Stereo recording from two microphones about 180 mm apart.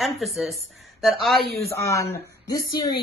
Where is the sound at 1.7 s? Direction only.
15° left (ahead or behind).